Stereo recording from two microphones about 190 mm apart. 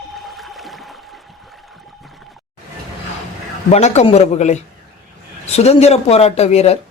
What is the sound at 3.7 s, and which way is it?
Speech, 35° left (ahead or behind).